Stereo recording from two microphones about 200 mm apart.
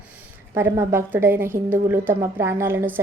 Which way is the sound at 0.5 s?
10° right (ahead or behind).